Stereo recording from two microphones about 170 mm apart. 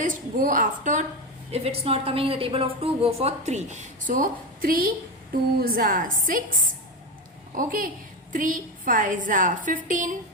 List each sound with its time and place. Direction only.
0.0 s a woman's voice: 55° right (ahead or behind)
1.5 s a woman's voice: 35° right (ahead or behind); by 6.4 s 55° right (ahead or behind)
7.5 s a woman's voice: 55° right (ahead or behind)